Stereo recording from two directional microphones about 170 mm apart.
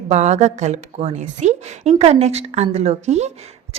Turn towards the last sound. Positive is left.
turn(degrees=-40)  # may be behind; listen again after turning